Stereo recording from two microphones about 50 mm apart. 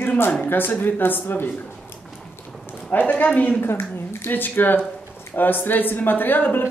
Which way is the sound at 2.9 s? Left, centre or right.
Left.